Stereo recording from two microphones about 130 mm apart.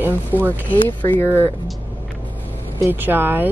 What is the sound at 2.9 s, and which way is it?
Speech, 15° right (ahead or behind).